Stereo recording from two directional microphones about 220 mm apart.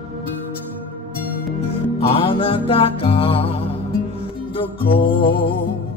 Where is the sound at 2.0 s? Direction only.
25° left (ahead or behind).